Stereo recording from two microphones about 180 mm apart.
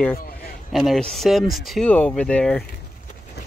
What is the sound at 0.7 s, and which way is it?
Speech, centre (ahead or behind).